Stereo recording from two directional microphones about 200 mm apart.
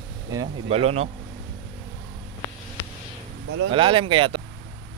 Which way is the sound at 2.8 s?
10° left (ahead or behind).